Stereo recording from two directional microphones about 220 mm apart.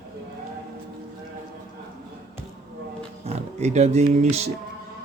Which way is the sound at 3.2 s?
30° right (ahead or behind).